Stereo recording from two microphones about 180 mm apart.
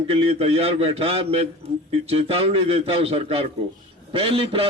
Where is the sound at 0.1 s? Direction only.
30° right (ahead or behind).